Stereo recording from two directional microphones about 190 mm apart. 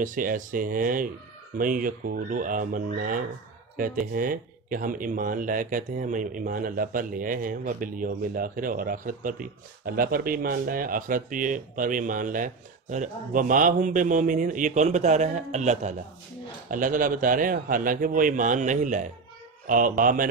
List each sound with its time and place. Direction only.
0.0 s speech: 45° right (ahead or behind)